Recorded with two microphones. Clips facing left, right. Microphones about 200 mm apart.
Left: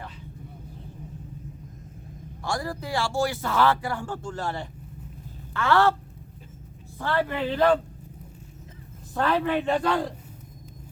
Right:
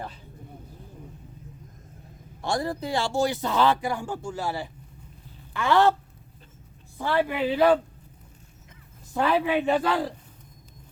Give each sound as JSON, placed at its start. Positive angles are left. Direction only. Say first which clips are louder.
{"t": 2.4, "sound": "a man's voice", "louder": "right 3 dB", "side_deg": -25}
{"t": 7.0, "sound": "a man's voice", "louder": "right 2 dB", "side_deg": -15}
{"t": 9.1, "sound": "a man's voice", "louder": "right 1 dB", "side_deg": -10}